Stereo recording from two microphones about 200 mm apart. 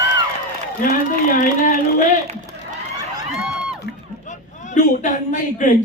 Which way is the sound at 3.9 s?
60° left (ahead or behind).